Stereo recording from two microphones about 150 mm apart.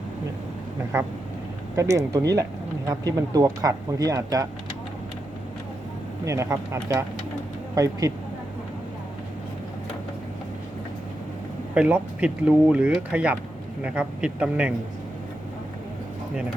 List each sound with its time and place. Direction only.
1.7 s speech: 20° right (ahead or behind)
6.2 s speech: 20° right (ahead or behind)
11.7 s speech: 10° right (ahead or behind)